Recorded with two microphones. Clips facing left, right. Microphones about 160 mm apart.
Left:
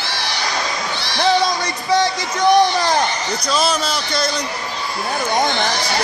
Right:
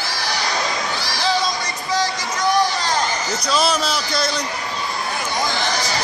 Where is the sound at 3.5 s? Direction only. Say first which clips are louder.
Even; centre (ahead or behind).